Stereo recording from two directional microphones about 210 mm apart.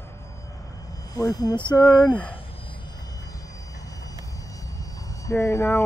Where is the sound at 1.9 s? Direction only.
5° left (ahead or behind).